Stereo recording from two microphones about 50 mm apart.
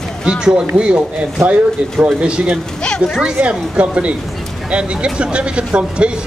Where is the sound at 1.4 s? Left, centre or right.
Right.